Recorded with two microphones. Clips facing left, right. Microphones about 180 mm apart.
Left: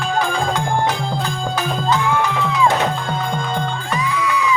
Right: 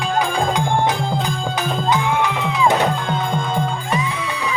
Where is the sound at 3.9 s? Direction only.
25° right (ahead or behind).